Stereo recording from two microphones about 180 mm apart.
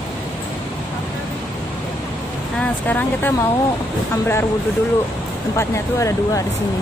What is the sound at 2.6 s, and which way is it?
Speech, 10° left (ahead or behind).